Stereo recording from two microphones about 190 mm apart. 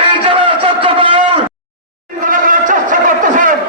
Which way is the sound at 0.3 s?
25° right (ahead or behind).